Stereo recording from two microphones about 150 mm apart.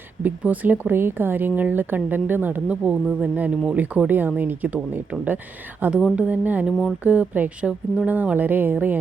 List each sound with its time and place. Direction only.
0.2 s a woman's voice: 10° right (ahead or behind)